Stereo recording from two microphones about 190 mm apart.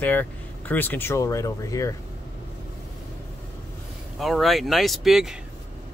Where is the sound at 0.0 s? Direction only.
10° left (ahead or behind).